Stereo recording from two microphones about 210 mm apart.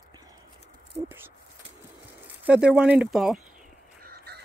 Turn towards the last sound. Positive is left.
turn(degrees=-50)  # may be behind; listen again after turning